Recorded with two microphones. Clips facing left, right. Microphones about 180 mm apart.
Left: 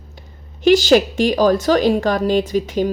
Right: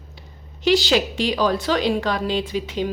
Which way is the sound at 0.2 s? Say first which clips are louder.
Left 7 dB; 45° left (ahead or behind).